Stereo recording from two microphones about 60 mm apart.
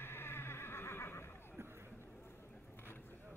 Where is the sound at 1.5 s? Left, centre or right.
Right.